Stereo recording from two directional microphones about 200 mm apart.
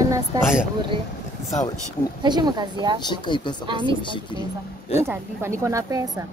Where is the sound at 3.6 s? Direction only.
25° right (ahead or behind).